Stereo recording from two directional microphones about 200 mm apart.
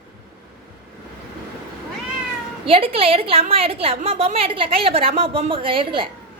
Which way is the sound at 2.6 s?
25° right (ahead or behind).